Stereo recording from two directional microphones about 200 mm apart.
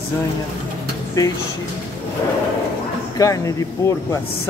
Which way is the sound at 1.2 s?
15° left (ahead or behind).